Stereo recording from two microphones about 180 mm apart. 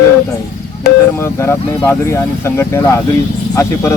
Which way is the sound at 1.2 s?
15° left (ahead or behind).